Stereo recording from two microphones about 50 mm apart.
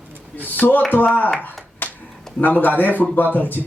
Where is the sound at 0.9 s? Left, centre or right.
Left.